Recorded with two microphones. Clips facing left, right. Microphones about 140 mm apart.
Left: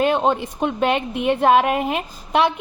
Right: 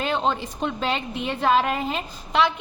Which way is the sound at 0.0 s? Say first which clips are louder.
Left 6 dB; 50° left (ahead or behind).